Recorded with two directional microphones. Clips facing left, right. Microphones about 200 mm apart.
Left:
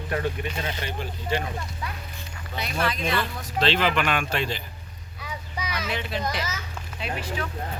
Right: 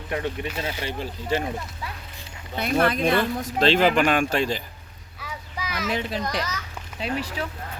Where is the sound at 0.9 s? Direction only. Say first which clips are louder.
Right 2 dB; 40° right (ahead or behind).